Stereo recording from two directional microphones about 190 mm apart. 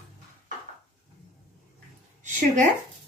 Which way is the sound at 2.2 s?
40° right (ahead or behind).